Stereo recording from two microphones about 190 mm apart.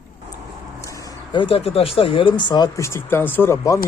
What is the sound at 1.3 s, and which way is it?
Speech, 25° left (ahead or behind).